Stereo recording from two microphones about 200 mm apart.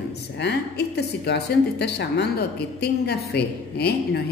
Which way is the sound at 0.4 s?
55° left (ahead or behind).